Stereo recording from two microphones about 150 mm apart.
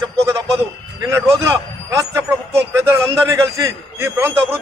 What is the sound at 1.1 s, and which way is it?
A man's voice, 20° right (ahead or behind).